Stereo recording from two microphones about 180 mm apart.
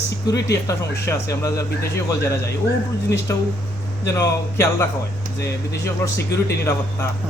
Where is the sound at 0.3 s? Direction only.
70° left (ahead or behind).